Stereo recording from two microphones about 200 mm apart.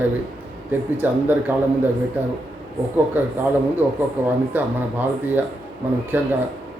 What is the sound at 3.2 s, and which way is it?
Speech, 10° right (ahead or behind).